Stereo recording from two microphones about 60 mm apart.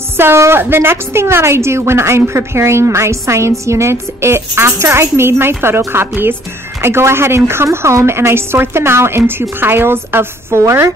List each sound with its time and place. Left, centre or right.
0.2 s a woman's voice: right
10.6 s a woman's voice: right